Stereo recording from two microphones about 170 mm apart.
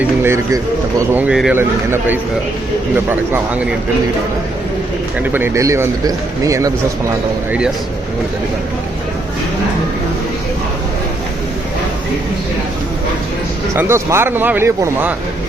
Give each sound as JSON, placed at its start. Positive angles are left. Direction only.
{"t": 0.2, "sound": "speech", "side_deg": -15}
{"t": 5.2, "sound": "speech", "side_deg": -10}
{"t": 13.7, "sound": "speech", "side_deg": -15}